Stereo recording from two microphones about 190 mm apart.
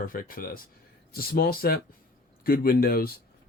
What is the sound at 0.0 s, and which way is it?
Speech, 45° left (ahead or behind).